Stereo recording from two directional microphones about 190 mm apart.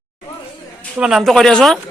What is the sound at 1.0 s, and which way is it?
Speech, centre (ahead or behind).